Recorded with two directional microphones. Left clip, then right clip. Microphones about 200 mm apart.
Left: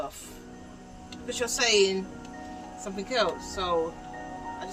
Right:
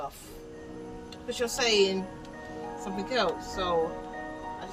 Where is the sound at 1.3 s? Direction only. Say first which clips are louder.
Left 2 dB; 15° left (ahead or behind).